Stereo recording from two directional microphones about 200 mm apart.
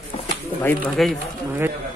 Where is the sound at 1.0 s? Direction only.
Centre (ahead or behind).